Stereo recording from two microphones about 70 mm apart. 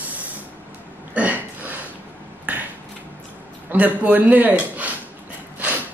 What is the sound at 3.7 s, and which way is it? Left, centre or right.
A man's voice, right.